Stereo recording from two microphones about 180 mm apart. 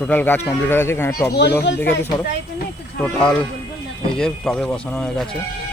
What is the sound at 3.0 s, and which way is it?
Speech, 5° left (ahead or behind).